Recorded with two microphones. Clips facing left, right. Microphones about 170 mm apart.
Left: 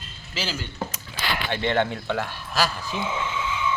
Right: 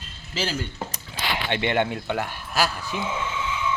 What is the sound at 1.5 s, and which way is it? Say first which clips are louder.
Speech: even; 15° right (ahead or behind).